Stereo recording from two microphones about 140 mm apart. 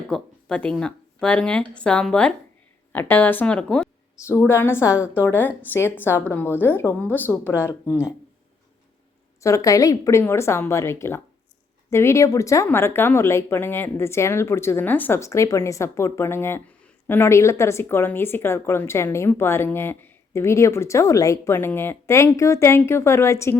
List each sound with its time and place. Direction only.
0.1 s a woman's voice: 5° left (ahead or behind)
4.3 s a woman's voice: 15° left (ahead or behind)
9.4 s speech: 25° left (ahead or behind)